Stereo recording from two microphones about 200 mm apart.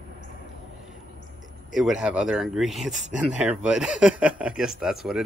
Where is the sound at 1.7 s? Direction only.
5° right (ahead or behind).